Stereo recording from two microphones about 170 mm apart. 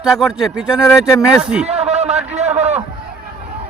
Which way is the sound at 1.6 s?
40° right (ahead or behind).